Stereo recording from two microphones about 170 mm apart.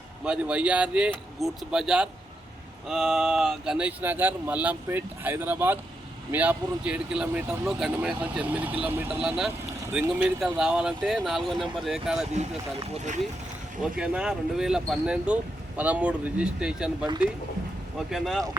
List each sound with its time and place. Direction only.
0.3 s speech: 5° right (ahead or behind)
12.9 s speech: 45° right (ahead or behind)
13.8 s speech: 5° right (ahead or behind)
18.1 s speech: centre (ahead or behind)